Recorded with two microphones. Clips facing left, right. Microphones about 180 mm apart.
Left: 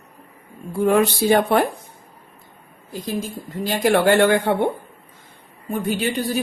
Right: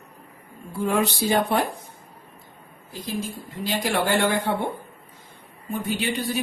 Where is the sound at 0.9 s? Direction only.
60° left (ahead or behind).